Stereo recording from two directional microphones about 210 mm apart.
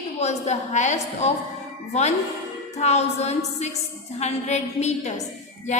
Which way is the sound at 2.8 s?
30° left (ahead or behind).